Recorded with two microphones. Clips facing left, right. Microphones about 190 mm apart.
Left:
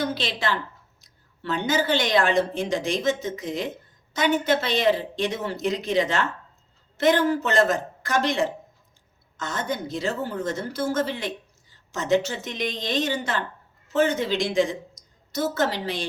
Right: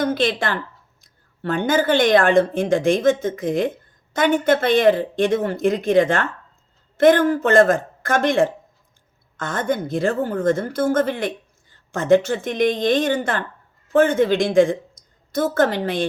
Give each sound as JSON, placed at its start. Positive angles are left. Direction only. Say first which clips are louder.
{"t": 0.0, "sound": "a woman's voice", "louder": "right 6 dB", "side_deg": -50}